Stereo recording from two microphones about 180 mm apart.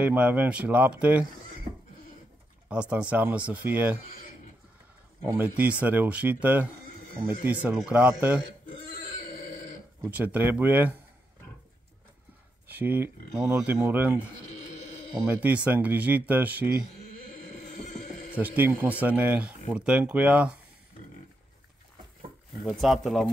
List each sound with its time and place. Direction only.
0.0 s speech: 10° right (ahead or behind)
2.7 s speech: 5° right (ahead or behind)
5.2 s speech: 10° right (ahead or behind)
10.0 s speech: 10° right (ahead or behind)
12.6 s speech: 10° right (ahead or behind)
17.8 s a sound: 40° left (ahead or behind)
18.3 s speech: 10° right (ahead or behind)
22.5 s speech: centre (ahead or behind)